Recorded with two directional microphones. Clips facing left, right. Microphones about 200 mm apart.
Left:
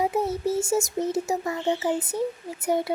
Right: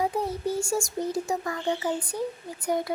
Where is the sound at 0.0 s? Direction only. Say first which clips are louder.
Left 3 dB; 25° left (ahead or behind).